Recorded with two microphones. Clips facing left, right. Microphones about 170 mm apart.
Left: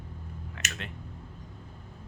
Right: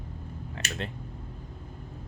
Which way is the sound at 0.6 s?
30° right (ahead or behind).